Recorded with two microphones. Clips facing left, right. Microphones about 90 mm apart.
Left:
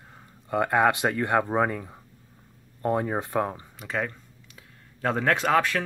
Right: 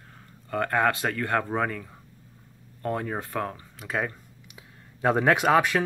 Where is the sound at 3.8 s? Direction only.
5° right (ahead or behind).